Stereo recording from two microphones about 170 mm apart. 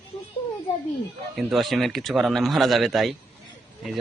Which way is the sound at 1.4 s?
Centre (ahead or behind).